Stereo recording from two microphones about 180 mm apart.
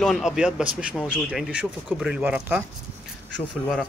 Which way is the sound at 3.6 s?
5° left (ahead or behind).